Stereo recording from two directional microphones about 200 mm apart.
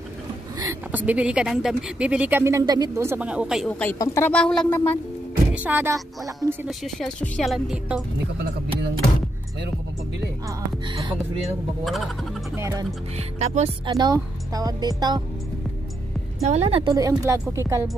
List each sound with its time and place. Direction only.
0.6 s speech: 10° right (ahead or behind)
3.8 s speech: 15° left (ahead or behind)
5.5 s speech: 10° right (ahead or behind)
6.8 s speech: 5° left (ahead or behind)
11.4 s speech: centre (ahead or behind)
12.5 s speech: 15° right (ahead or behind)
13.4 s speech: 35° right (ahead or behind)
13.9 s speech: 20° right (ahead or behind)
16.4 s a woman's voice: 30° right (ahead or behind)
16.9 s speech: 15° right (ahead or behind)